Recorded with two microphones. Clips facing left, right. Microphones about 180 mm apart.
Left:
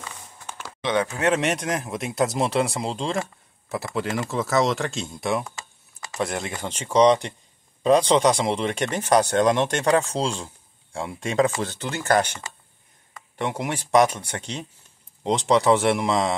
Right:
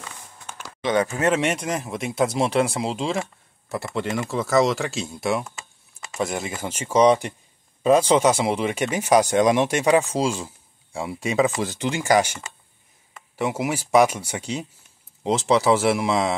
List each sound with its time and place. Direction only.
0.8 s speech: centre (ahead or behind)